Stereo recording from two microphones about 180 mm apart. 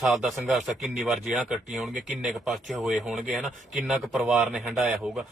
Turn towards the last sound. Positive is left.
turn(degrees=0)  # may be behind; listen again after turning